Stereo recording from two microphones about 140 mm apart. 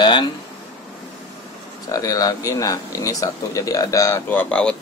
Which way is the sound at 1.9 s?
25° left (ahead or behind).